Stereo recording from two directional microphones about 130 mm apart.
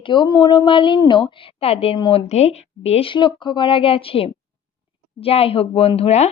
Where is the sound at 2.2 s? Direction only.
55° left (ahead or behind).